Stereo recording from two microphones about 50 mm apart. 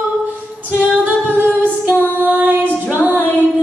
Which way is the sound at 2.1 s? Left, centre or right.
Right.